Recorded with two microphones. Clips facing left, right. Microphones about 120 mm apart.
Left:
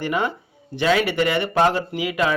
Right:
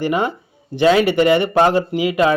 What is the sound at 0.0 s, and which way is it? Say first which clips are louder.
Speech: right 4 dB; 15° right (ahead or behind).